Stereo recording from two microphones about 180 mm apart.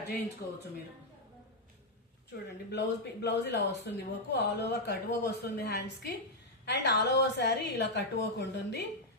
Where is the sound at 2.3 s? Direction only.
60° left (ahead or behind).